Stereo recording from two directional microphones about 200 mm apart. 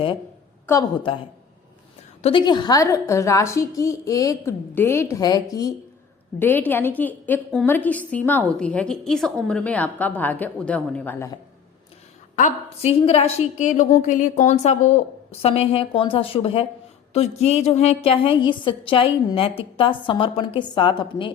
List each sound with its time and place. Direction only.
0.7 s a woman's voice: 20° left (ahead or behind)
2.2 s a woman's voice: 25° left (ahead or behind)
12.4 s a woman's voice: 35° left (ahead or behind)